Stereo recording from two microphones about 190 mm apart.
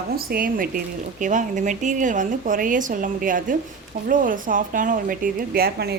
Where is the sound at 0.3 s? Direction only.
50° right (ahead or behind).